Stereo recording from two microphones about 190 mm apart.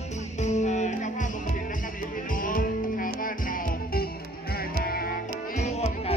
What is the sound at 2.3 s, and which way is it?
Music, 45° left (ahead or behind).